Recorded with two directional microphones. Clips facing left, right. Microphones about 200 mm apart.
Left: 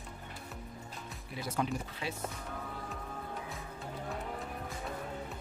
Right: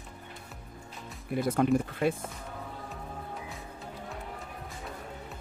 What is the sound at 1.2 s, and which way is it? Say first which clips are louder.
Speech: right 10 dB; 55° right (ahead or behind).